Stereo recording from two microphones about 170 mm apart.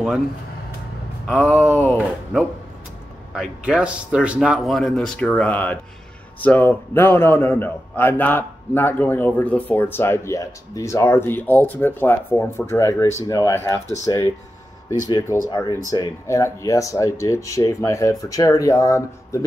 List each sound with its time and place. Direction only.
1.3 s a man's voice: 10° left (ahead or behind)
3.3 s a man's voice: 5° right (ahead or behind); by 19.4 s 20° left (ahead or behind)